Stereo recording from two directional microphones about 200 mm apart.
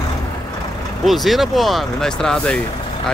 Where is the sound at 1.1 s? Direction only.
Centre (ahead or behind).